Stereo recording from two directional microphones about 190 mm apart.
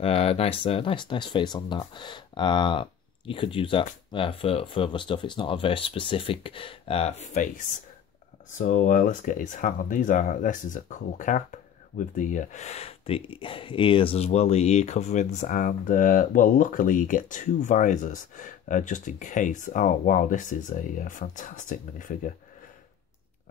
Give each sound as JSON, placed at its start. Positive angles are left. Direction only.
{"t": 0.0, "sound": "speech", "side_deg": 30}